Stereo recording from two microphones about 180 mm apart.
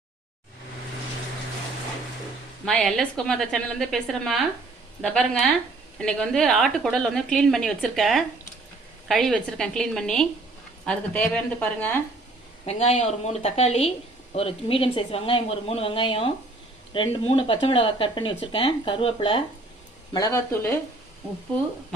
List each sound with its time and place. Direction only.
2.6 s a woman's voice: centre (ahead or behind)
12.6 s speech: 35° left (ahead or behind)
20.1 s a woman's voice: 15° left (ahead or behind)